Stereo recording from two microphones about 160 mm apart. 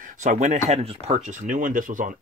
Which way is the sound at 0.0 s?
55° right (ahead or behind).